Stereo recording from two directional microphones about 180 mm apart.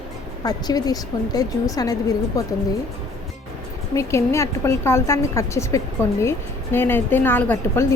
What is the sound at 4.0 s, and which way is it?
A woman's voice, 15° left (ahead or behind).